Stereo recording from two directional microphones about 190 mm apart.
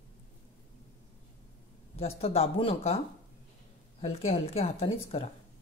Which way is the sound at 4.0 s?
30° left (ahead or behind).